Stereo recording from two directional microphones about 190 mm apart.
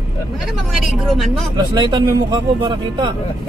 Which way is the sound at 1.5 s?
20° right (ahead or behind).